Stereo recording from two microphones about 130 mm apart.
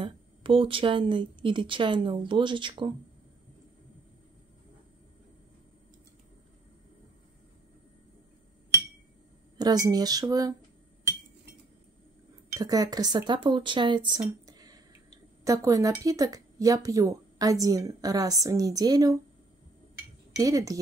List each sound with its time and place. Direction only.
0.0 s speech: 45° right (ahead or behind)
9.6 s speech: 30° right (ahead or behind)
12.4 s speech: 30° right (ahead or behind)
20.3 s speech: 25° right (ahead or behind)